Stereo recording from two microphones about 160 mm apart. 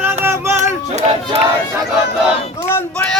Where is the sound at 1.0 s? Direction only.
40° right (ahead or behind).